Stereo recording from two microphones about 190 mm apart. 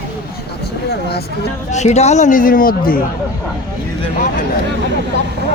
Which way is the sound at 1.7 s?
35° left (ahead or behind).